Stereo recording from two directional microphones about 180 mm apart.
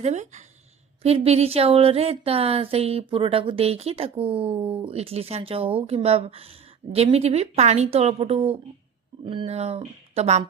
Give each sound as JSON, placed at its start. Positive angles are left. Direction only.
{"t": 0.0, "sound": "speech", "side_deg": -40}